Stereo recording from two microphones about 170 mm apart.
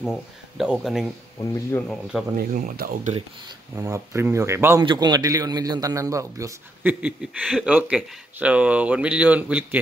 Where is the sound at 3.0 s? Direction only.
40° right (ahead or behind).